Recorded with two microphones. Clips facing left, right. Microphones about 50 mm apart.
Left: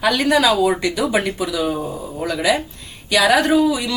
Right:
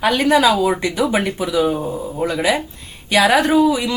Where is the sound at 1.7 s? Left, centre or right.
Centre.